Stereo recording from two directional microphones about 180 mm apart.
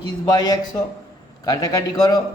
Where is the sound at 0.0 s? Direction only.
20° left (ahead or behind).